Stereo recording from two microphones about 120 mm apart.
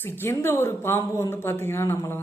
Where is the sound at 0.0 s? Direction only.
20° left (ahead or behind).